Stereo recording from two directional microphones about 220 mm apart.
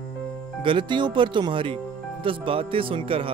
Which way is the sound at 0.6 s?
20° right (ahead or behind).